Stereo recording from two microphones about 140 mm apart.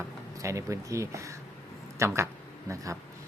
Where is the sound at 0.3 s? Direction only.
20° right (ahead or behind).